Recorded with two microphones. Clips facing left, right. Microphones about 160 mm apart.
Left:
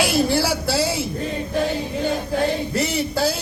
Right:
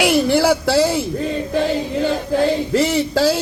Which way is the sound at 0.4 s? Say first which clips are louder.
Right 6 dB; 80° right.